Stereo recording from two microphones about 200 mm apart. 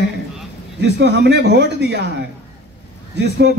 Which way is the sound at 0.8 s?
60° right (ahead or behind).